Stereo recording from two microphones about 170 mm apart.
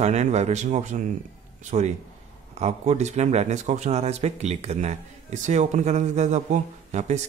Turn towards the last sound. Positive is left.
turn(degrees=-45)  # may be behind; listen again after turning